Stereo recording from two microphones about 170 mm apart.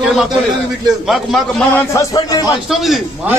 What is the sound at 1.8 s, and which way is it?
Speech, 20° left (ahead or behind).